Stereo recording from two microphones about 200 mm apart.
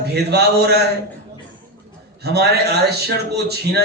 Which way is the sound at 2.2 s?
55° right (ahead or behind).